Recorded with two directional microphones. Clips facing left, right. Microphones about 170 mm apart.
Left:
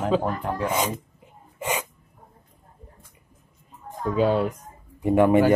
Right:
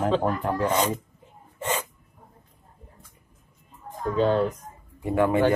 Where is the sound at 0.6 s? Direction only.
10° left (ahead or behind).